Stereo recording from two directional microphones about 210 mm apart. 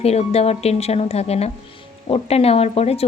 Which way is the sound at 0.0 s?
30° left (ahead or behind).